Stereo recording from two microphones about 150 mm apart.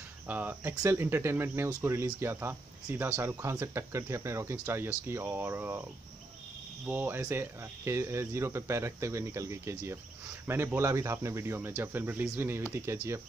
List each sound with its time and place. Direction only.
0.3 s speech: 10° right (ahead or behind)
6.9 s speech: 15° right (ahead or behind)